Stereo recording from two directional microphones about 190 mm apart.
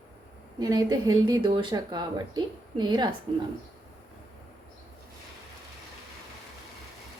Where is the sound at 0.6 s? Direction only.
20° right (ahead or behind).